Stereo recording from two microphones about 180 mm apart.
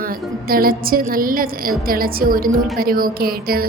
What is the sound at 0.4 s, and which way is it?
A woman's voice, 55° right (ahead or behind).